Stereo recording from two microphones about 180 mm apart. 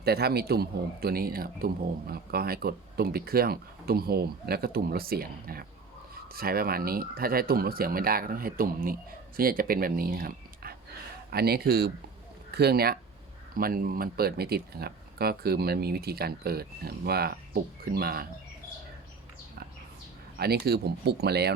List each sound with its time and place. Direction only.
0.0 s a man's voice: 60° right (ahead or behind)
20.4 s a man's voice: 60° right (ahead or behind)